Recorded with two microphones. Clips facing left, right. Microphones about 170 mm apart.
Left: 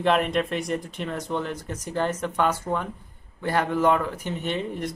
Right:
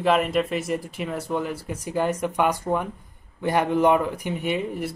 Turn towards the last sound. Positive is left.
turn(degrees=-10)  # may be behind; listen again after turning